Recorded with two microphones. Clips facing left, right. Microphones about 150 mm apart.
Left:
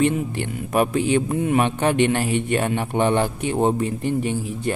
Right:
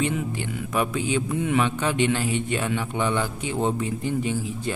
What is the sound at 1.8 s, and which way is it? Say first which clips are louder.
A man's voice: left 4 dB; 60° left (ahead or behind).